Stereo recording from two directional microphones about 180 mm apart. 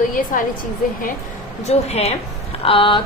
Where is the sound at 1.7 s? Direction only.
35° left (ahead or behind).